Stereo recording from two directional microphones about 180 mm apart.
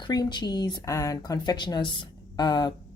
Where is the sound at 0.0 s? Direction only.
25° left (ahead or behind).